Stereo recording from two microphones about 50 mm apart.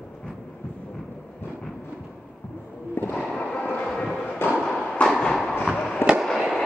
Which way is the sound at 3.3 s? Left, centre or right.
Left.